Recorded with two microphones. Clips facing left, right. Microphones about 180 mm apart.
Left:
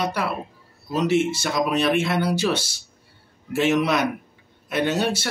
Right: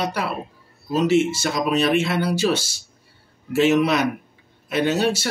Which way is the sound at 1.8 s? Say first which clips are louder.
Right 1 dB; 55° left (ahead or behind).